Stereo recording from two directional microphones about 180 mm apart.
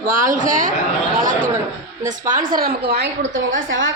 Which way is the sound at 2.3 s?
50° right (ahead or behind).